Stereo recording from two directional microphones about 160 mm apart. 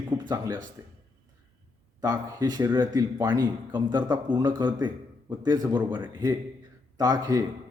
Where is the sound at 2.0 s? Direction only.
25° right (ahead or behind).